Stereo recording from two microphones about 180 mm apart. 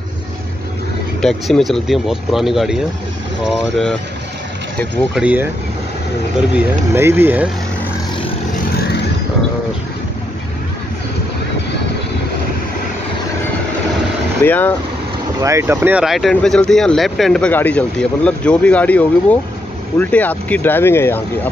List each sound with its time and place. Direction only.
1.2 s speech: centre (ahead or behind)
5.2 s speech: 10° right (ahead or behind)
6.9 s speech: 15° right (ahead or behind)
8.7 s vehicle: 65° left (ahead or behind)
14.4 s speech: 10° left (ahead or behind)
15.4 s speech: 15° right (ahead or behind); by 21.2 s 15° left (ahead or behind)